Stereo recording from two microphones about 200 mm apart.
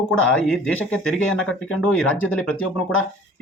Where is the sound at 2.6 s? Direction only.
85° left.